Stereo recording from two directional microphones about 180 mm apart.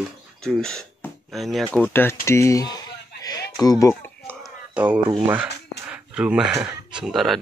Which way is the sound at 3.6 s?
20° left (ahead or behind).